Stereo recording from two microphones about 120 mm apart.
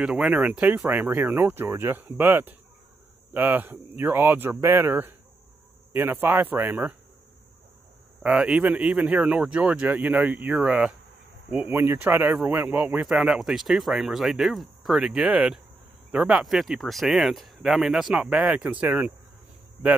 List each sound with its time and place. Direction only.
0.0 s speech: 10° right (ahead or behind)
8.2 s speech: 10° right (ahead or behind)